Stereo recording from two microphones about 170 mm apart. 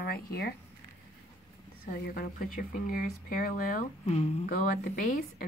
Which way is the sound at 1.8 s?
55° left (ahead or behind).